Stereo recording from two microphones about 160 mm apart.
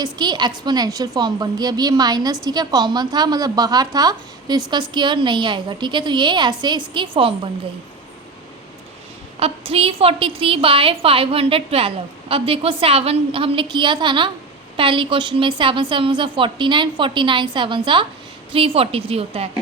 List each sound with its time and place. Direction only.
0.0 s a woman's voice: 25° right (ahead or behind)
9.4 s a woman's voice: 35° right (ahead or behind)